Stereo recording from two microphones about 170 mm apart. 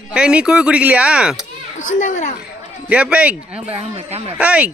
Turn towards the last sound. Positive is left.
turn(degrees=-5)  # may be behind; listen again after turning